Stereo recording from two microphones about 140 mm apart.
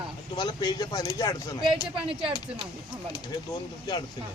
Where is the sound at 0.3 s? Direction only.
30° left (ahead or behind).